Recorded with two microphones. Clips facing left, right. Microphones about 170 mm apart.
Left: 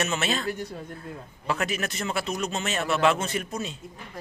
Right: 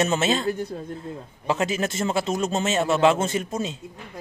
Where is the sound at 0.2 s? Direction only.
25° right (ahead or behind).